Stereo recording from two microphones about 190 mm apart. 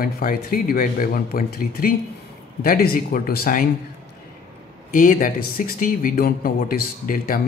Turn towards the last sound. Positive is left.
turn(degrees=45)  # may be behind; listen again after turning